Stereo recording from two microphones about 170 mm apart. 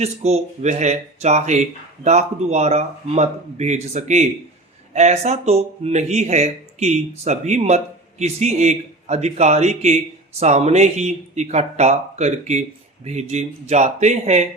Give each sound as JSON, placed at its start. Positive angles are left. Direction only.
{"t": 0.0, "sound": "speech", "side_deg": -40}